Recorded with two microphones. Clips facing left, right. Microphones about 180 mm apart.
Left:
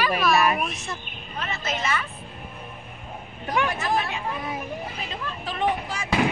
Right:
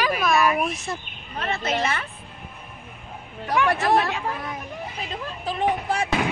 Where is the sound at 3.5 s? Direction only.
70° right (ahead or behind).